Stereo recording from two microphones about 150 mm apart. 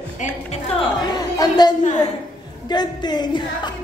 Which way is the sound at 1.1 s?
30° left (ahead or behind).